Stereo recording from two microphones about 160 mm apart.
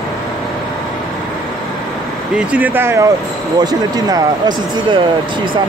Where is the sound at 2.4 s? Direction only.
10° right (ahead or behind); by 4.2 s 25° right (ahead or behind).